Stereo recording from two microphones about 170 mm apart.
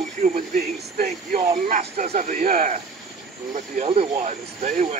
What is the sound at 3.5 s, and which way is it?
Speech, 40° right (ahead or behind).